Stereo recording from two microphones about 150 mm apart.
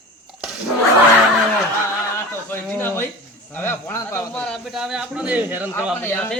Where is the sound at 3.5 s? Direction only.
15° left (ahead or behind).